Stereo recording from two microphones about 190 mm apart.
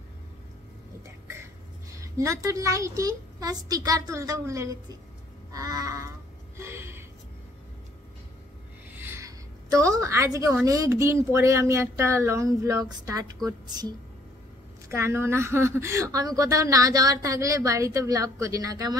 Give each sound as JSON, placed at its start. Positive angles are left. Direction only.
{"t": 1.9, "sound": "a woman's voice", "side_deg": -15}
{"t": 5.5, "sound": "a sound", "side_deg": -20}
{"t": 8.9, "sound": "a woman's voice", "side_deg": -10}